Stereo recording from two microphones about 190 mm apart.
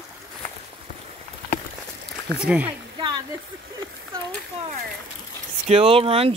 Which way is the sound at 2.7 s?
25° right (ahead or behind).